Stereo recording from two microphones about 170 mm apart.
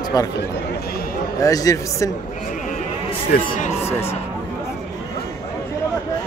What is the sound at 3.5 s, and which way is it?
Speech, 45° left (ahead or behind).